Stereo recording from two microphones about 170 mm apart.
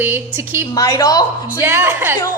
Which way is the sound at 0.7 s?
20° left (ahead or behind).